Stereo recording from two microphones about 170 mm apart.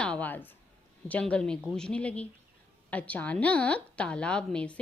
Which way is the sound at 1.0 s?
10° left (ahead or behind).